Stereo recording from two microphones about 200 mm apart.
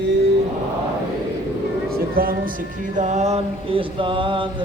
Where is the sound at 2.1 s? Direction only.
45° right (ahead or behind).